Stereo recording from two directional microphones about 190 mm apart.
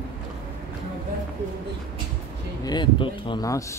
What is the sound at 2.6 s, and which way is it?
Speech, 25° left (ahead or behind).